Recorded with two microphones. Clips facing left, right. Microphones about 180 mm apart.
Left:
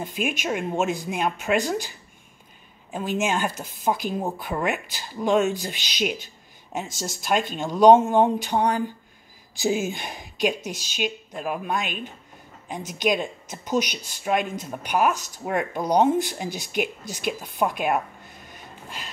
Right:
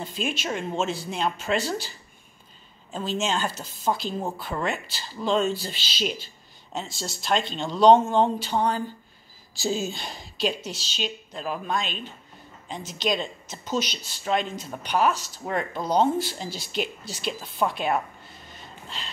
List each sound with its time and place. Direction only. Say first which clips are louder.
0.0 s speech: left 2 dB; 15° left (ahead or behind)
6.9 s speech: left 2 dB; 45° left (ahead or behind)
7.7 s speech: left 2 dB; 10° left (ahead or behind)
18.5 s a sound: left 1 dB; 10° left (ahead or behind)